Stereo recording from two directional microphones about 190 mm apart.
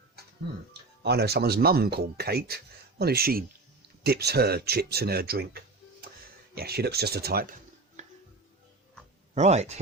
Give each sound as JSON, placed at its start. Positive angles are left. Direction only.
{"t": 1.0, "sound": "speech", "side_deg": -60}
{"t": 8.0, "sound": "music", "side_deg": -40}
{"t": 9.3, "sound": "speech", "side_deg": -35}